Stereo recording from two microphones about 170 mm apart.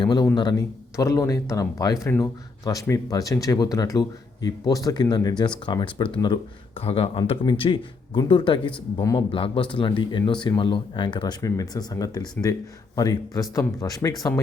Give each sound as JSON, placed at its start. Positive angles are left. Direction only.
{"t": 0.0, "sound": "speech", "side_deg": 25}